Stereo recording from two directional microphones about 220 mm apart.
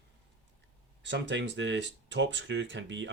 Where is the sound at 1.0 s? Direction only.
55° right (ahead or behind).